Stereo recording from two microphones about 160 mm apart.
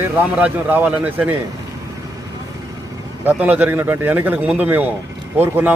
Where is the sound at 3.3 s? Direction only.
10° right (ahead or behind).